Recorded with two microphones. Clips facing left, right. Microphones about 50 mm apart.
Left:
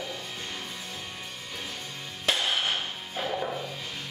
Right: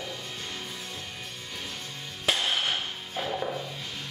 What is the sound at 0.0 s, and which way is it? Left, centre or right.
Music, centre.